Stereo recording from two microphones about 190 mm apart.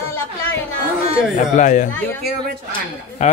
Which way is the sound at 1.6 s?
40° left (ahead or behind).